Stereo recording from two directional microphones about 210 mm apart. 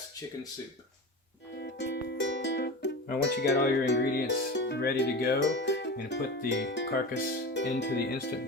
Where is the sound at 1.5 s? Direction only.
55° left (ahead or behind).